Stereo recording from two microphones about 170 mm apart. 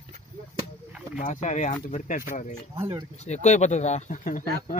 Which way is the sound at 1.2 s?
45° left (ahead or behind).